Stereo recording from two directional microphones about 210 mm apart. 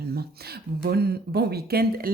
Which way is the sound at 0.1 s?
50° right (ahead or behind).